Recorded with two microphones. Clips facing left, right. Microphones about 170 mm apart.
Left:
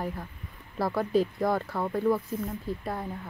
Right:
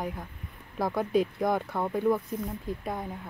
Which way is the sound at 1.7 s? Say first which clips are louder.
Even; 15° right (ahead or behind).